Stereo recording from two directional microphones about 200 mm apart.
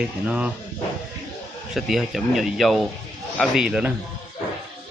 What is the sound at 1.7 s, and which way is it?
Speech, centre (ahead or behind).